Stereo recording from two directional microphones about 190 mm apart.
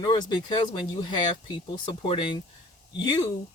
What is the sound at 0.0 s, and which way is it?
Speech, 25° left (ahead or behind).